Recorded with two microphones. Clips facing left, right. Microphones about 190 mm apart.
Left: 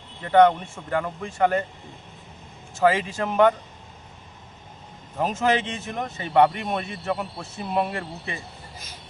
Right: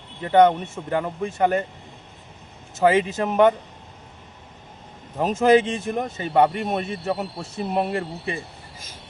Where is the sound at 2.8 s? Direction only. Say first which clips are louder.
Right 3 dB; 20° right (ahead or behind).